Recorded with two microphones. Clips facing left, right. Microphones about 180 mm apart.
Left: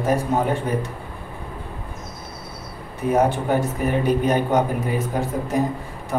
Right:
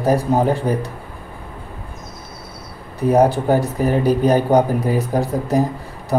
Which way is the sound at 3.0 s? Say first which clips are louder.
Right 5 dB; 35° right (ahead or behind).